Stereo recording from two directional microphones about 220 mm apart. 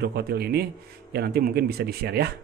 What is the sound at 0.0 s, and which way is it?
Speech, 45° right (ahead or behind).